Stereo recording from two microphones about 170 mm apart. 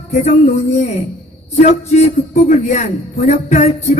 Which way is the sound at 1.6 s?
45° left (ahead or behind).